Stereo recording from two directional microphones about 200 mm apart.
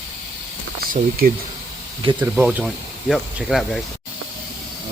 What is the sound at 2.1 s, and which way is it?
Speech, 10° right (ahead or behind).